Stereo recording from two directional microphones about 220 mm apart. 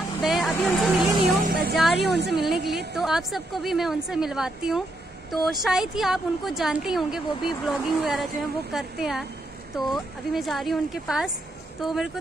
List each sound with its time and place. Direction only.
0.2 s vehicle: centre (ahead or behind)
1.2 s a sound: 40° right (ahead or behind)
2.0 s a woman's voice: 50° right (ahead or behind)
2.4 s a woman's voice: centre (ahead or behind)